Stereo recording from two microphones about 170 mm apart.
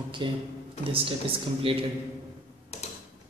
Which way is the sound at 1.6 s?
30° right (ahead or behind).